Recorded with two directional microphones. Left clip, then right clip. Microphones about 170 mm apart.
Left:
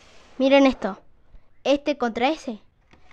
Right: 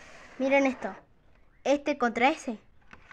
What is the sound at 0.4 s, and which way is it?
Speech, 50° left (ahead or behind).